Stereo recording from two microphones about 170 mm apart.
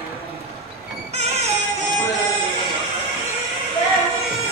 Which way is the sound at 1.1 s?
40° right (ahead or behind).